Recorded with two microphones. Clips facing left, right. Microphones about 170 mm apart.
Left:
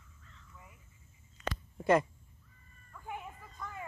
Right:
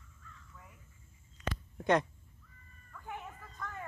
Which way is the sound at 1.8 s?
5° left (ahead or behind).